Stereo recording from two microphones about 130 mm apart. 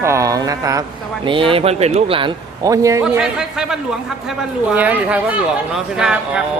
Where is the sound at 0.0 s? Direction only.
25° right (ahead or behind).